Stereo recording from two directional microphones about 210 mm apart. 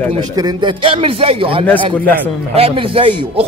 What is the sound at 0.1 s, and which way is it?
Speech, 20° right (ahead or behind).